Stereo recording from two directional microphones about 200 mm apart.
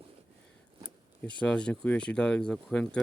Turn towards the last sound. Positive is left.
turn(degrees=5)  # may be behind; listen again after turning